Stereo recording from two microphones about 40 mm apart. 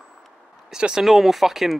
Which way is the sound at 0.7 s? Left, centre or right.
Centre.